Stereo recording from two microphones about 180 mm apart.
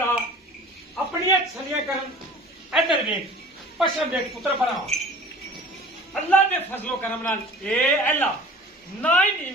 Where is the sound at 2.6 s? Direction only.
Centre (ahead or behind).